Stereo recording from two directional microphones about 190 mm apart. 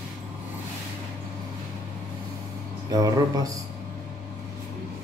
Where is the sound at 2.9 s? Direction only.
20° right (ahead or behind).